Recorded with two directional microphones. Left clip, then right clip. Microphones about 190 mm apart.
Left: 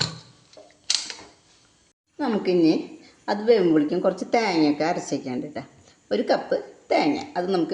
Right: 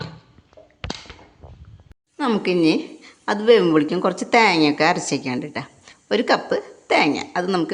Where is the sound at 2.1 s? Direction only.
25° right (ahead or behind).